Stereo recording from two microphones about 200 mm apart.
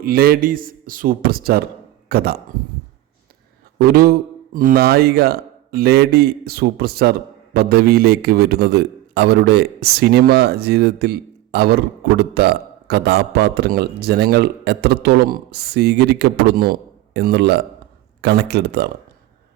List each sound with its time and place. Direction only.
0.0 s speech: 50° right (ahead or behind)
3.8 s a man's voice: 50° right (ahead or behind)